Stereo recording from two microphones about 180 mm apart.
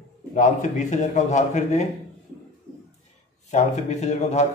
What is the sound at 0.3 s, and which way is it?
A man's voice, 45° left (ahead or behind).